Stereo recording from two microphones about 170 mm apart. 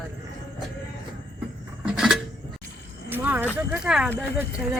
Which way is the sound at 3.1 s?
10° right (ahead or behind).